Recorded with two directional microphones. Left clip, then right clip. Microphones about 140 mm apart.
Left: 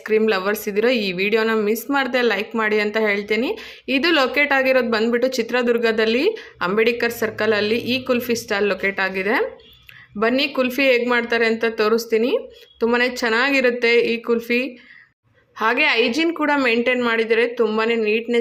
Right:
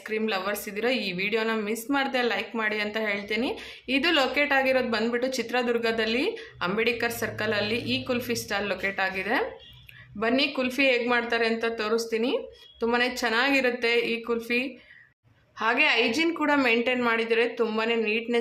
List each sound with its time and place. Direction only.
0.3 s a woman's voice: 35° left (ahead or behind)